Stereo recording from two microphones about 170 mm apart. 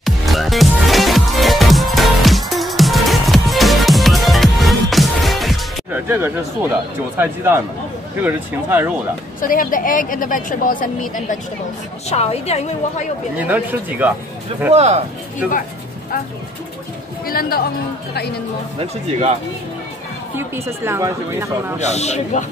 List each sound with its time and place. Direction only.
0.0 s music: centre (ahead or behind)
5.9 s music: 10° right (ahead or behind)
7.2 s speech: 15° right (ahead or behind)
9.4 s a woman's voice: 55° left (ahead or behind)
12.1 s a woman's voice: 40° left (ahead or behind)
13.4 s speech: 10° right (ahead or behind)
14.7 s speech: 40° right (ahead or behind)
17.3 s speech: 60° left (ahead or behind)
18.8 s speech: 40° right (ahead or behind)
20.3 s speech: 15° right (ahead or behind)
21.7 s a woman's voice: 40° left (ahead or behind)